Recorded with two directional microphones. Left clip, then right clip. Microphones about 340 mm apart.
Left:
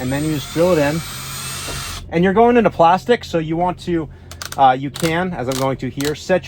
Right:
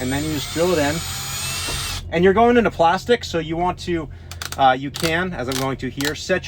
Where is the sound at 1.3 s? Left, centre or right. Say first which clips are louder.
Right 2 dB; centre.